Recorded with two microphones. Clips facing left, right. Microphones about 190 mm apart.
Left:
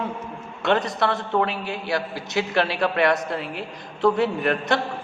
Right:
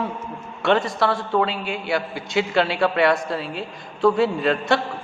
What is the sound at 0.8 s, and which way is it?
Speech, 20° left (ahead or behind).